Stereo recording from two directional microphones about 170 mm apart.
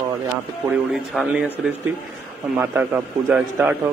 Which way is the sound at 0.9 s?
Centre (ahead or behind).